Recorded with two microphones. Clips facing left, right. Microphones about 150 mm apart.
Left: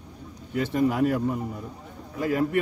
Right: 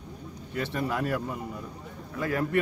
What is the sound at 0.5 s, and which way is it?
Speech, 15° left (ahead or behind).